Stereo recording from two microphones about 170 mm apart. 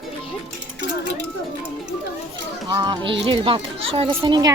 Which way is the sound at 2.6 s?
25° right (ahead or behind).